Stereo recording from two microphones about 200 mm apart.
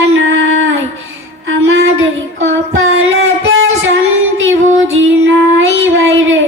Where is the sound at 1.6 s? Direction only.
75° right (ahead or behind).